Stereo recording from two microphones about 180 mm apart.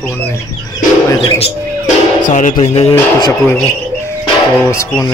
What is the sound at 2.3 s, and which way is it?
Speech, 40° left (ahead or behind).